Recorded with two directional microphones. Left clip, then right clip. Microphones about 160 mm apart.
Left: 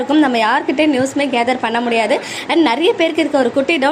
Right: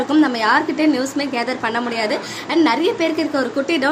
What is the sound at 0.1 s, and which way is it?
A woman's voice, 15° left (ahead or behind).